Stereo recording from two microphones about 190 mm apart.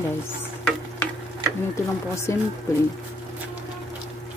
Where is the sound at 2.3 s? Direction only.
15° left (ahead or behind).